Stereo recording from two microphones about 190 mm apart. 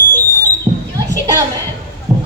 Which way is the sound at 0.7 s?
25° right (ahead or behind).